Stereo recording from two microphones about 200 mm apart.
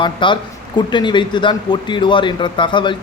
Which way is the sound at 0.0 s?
25° left (ahead or behind).